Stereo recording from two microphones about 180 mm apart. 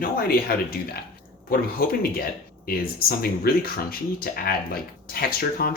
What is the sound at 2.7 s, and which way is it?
Speech, 55° left (ahead or behind).